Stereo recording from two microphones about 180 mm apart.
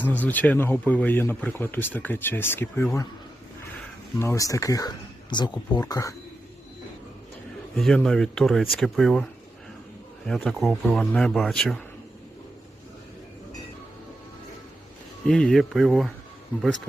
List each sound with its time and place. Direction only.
0.0 s speech: 10° left (ahead or behind)
4.2 s speech: 15° left (ahead or behind)
7.8 s speech: 5° left (ahead or behind)
15.3 s speech: 5° left (ahead or behind)